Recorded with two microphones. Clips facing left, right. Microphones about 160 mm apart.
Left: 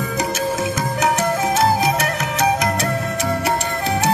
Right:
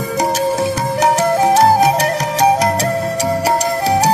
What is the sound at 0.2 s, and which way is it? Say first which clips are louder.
Music: right 6 dB; 35° right (ahead or behind).